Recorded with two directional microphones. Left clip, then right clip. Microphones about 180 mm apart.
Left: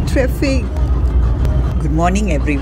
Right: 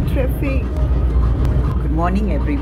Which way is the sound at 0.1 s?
45° left (ahead or behind).